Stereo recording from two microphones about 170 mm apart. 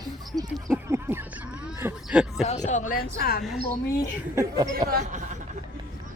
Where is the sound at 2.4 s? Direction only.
40° left (ahead or behind); by 3.4 s 65° left (ahead or behind).